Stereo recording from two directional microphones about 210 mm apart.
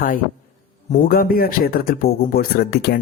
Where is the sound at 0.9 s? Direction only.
45° left (ahead or behind).